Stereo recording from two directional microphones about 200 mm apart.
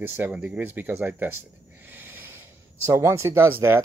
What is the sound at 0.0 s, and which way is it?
Speech, 10° right (ahead or behind).